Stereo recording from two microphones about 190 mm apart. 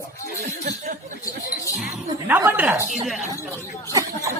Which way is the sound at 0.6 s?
40° right (ahead or behind).